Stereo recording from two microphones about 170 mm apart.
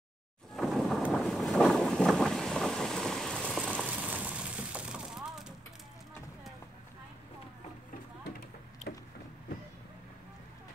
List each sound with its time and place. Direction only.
0.6 s boat: centre (ahead or behind)
3.8 s vehicle: 10° right (ahead or behind)
8.9 s a sound: 65° left (ahead or behind)